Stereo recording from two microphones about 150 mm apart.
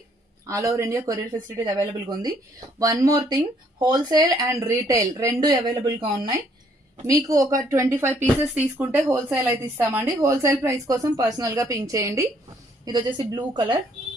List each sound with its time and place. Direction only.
0.5 s speech: 20° right (ahead or behind)